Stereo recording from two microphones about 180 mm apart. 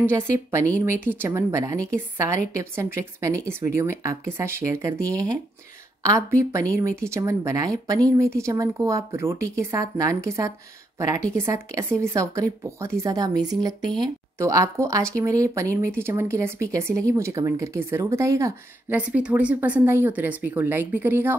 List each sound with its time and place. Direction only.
0.8 s speech: 10° right (ahead or behind)